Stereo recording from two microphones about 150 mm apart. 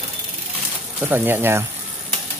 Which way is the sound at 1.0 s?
15° right (ahead or behind).